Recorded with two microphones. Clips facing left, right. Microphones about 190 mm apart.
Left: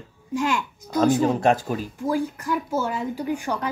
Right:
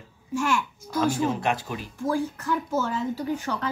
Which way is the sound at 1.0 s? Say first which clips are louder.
Left 6 dB; 45° left (ahead or behind).